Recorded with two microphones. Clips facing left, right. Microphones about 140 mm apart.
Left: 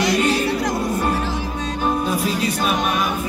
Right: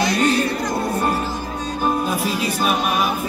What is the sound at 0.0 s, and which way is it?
Music, 90° left.